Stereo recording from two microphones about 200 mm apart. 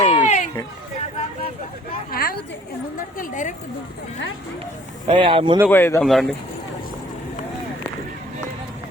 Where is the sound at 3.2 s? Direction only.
40° left (ahead or behind).